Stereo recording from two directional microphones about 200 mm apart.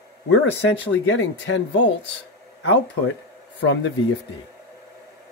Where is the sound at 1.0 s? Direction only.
70° left (ahead or behind).